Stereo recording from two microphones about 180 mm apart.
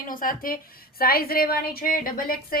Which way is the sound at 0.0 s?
50° left (ahead or behind).